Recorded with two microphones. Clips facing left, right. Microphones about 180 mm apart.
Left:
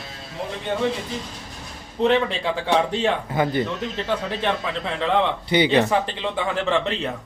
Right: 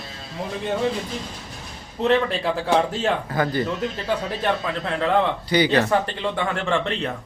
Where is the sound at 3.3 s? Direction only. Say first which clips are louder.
Left 1 dB; 20° left (ahead or behind).